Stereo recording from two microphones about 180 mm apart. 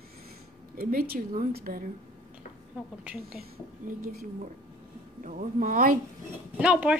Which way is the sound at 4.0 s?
60° right (ahead or behind).